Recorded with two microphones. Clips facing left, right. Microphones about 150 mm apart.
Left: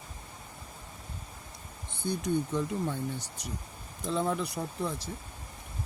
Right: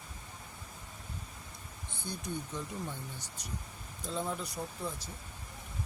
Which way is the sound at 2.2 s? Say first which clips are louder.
Left 10 dB; 75° left (ahead or behind).